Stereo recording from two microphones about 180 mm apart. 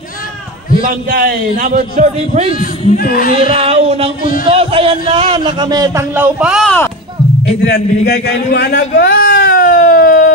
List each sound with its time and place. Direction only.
0.8 s speech: 50° right (ahead or behind)
2.6 s speech: 55° left (ahead or behind)
3.3 s a sound: 35° right (ahead or behind)
4.5 s a man's voice: 30° right (ahead or behind); by 6.7 s 5° right (ahead or behind)
7.6 s a man's voice: 60° left (ahead or behind)
9.5 s a sound: 50° left (ahead or behind)